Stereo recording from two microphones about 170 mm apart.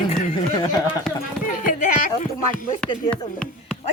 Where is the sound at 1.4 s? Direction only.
50° left (ahead or behind).